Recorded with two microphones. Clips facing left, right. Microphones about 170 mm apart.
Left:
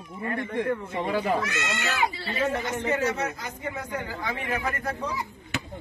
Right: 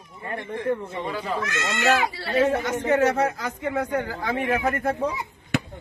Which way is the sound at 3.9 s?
60° right (ahead or behind).